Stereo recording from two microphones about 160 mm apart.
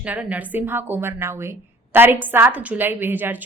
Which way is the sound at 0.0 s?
10° right (ahead or behind).